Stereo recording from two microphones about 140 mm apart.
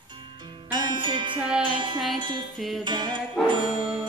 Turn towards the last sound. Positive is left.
turn(degrees=-35)  # may be behind; listen again after turning